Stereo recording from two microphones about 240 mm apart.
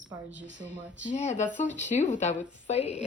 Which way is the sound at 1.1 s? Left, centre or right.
Left.